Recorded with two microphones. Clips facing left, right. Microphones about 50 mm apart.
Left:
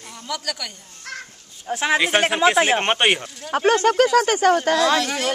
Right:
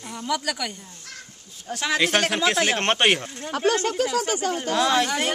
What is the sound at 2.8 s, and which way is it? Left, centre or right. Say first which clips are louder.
Speech: left 1 dB; centre.